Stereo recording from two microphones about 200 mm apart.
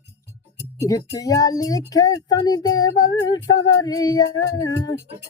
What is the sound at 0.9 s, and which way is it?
Speech, 15° left (ahead or behind).